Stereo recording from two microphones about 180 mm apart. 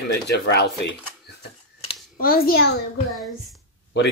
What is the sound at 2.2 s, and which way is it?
Speech, 55° left (ahead or behind).